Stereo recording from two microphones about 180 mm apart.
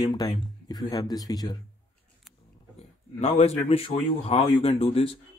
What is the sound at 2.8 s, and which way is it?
Speech, 35° left (ahead or behind).